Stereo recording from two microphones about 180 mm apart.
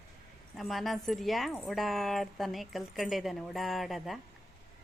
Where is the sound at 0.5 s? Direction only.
Centre (ahead or behind).